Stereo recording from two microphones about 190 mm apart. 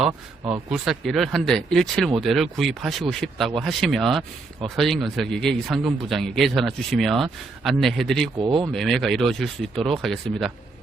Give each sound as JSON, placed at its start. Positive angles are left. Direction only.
{"t": 0.7, "sound": "speech", "side_deg": 0}
{"t": 8.4, "sound": "speech", "side_deg": -25}
{"t": 8.7, "sound": "speech", "side_deg": 0}